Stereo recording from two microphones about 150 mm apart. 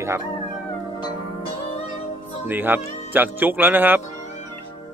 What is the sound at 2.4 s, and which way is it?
Speech, 15° right (ahead or behind).